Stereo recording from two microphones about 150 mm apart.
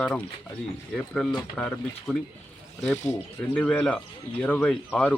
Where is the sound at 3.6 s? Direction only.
10° left (ahead or behind).